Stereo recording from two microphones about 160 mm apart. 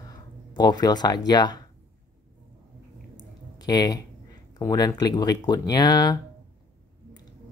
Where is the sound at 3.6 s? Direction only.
25° left (ahead or behind).